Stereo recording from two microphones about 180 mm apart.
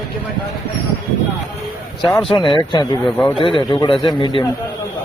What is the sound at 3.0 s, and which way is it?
Speech, 5° left (ahead or behind).